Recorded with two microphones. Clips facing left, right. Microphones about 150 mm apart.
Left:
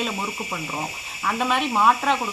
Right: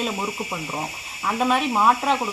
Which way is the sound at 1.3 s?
5° right (ahead or behind).